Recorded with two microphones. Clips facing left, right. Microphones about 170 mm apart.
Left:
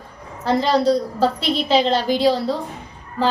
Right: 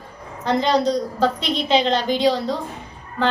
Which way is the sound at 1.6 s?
5° left (ahead or behind).